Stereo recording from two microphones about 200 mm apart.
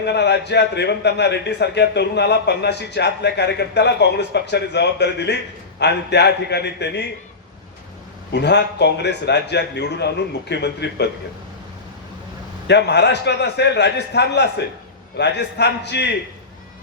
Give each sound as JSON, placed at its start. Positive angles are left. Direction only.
{"t": 0.0, "sound": "speech", "side_deg": 55}
{"t": 8.3, "sound": "speech", "side_deg": 60}
{"t": 12.6, "sound": "speech", "side_deg": 60}